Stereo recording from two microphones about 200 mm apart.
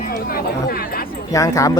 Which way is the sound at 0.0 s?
50° left (ahead or behind).